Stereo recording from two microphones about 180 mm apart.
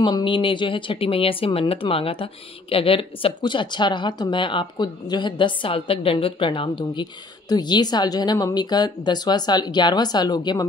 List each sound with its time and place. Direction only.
0.0 s speech: 25° left (ahead or behind)